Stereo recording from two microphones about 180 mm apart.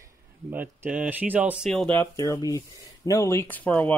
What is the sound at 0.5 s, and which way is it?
Speech, 10° right (ahead or behind).